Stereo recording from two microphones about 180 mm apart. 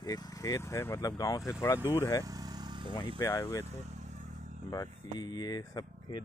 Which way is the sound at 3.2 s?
20° left (ahead or behind).